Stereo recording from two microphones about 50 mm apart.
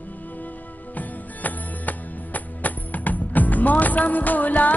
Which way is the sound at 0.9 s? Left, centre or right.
Left.